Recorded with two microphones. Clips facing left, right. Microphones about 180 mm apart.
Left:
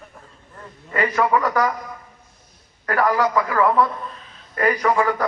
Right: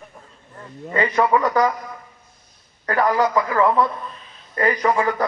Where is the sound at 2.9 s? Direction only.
20° right (ahead or behind).